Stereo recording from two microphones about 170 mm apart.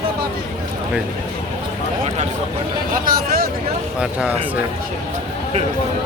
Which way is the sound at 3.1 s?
60° right (ahead or behind).